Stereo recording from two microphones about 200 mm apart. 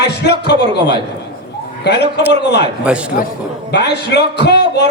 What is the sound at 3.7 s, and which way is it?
A man's voice, 55° left (ahead or behind).